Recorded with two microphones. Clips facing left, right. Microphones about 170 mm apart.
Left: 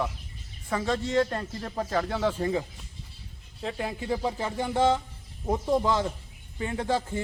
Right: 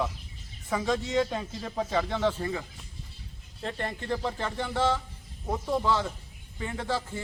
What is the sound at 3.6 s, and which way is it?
Speech, 5° left (ahead or behind).